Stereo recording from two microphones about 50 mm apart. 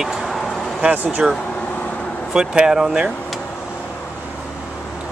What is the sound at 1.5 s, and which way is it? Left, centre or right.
Vehicle, left.